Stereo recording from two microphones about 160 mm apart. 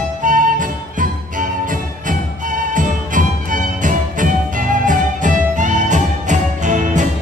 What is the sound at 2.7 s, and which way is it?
Music, 55° right (ahead or behind).